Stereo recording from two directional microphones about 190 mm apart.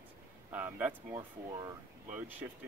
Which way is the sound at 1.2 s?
20° right (ahead or behind).